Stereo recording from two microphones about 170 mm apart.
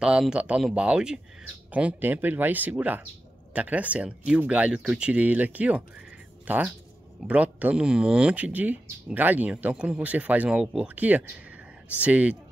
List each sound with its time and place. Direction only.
0.0 s speech: 5° right (ahead or behind)